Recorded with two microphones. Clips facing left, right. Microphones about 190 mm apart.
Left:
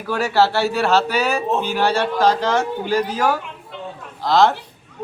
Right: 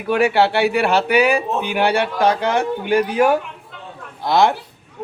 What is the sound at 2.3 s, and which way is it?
Speech, 60° right (ahead or behind).